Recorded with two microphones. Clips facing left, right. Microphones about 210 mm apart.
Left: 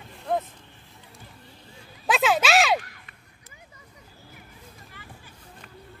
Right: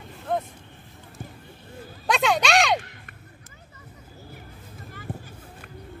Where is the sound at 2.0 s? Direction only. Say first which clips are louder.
Even; 5° left (ahead or behind).